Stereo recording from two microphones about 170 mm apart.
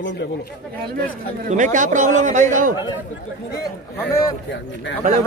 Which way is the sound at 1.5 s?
50° right (ahead or behind).